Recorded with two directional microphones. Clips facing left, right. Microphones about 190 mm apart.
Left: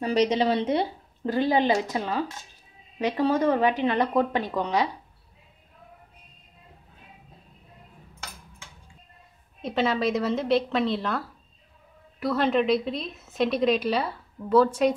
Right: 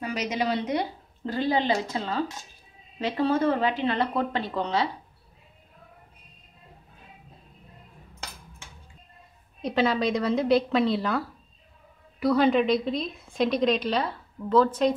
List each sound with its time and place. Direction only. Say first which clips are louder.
0.0 s speech: left 6 dB; 30° left (ahead or behind); by 4.8 s 15° left (ahead or behind)
9.6 s a woman's voice: right 1 dB; centre (ahead or behind)